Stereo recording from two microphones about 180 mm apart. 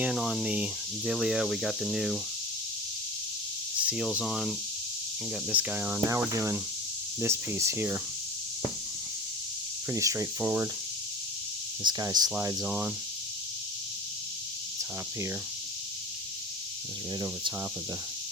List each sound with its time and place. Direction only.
0.0 s speech: centre (ahead or behind)
3.8 s speech: 5° right (ahead or behind)
9.9 s speech: 15° right (ahead or behind)
11.8 s speech: 20° right (ahead or behind)